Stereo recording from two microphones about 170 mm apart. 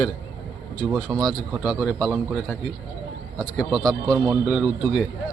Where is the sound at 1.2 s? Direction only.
Centre (ahead or behind).